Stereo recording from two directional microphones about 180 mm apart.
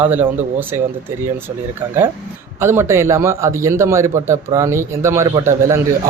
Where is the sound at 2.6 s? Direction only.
15° right (ahead or behind).